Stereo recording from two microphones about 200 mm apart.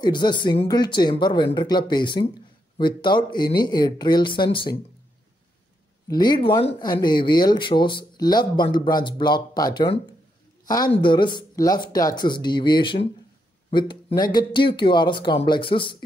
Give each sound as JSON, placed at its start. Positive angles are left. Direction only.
{"t": 0.0, "sound": "speech", "side_deg": 20}
{"t": 6.0, "sound": "speech", "side_deg": 20}